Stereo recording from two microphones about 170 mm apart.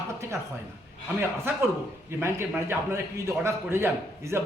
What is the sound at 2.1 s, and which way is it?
A man's voice, 15° right (ahead or behind).